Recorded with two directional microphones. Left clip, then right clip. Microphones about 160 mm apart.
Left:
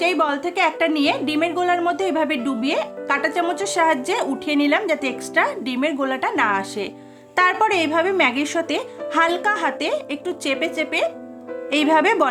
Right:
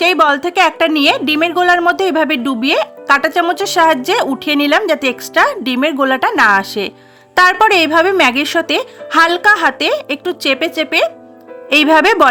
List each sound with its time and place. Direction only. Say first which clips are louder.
0.0 s a woman's voice: right 9 dB; 45° right (ahead or behind)